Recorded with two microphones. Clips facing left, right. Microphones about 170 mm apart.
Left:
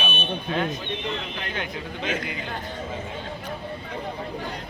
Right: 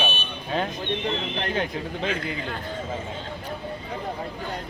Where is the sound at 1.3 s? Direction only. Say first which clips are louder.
Right 5 dB; 35° right (ahead or behind).